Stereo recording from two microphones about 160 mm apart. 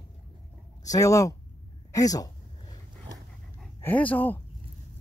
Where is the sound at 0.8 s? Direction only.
20° left (ahead or behind).